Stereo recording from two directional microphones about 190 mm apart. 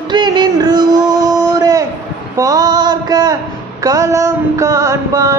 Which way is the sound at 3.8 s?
15° right (ahead or behind).